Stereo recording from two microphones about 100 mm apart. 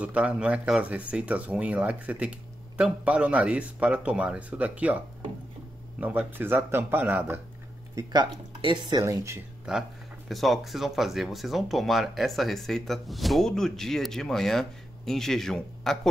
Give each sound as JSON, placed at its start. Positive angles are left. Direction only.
{"t": 0.0, "sound": "speech", "side_deg": -10}
{"t": 7.9, "sound": "speech", "side_deg": -45}
{"t": 9.0, "sound": "speech", "side_deg": -30}
{"t": 9.7, "sound": "speech", "side_deg": 0}